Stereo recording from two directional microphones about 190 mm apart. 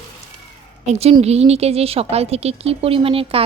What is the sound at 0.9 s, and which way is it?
A woman's voice, 35° right (ahead or behind).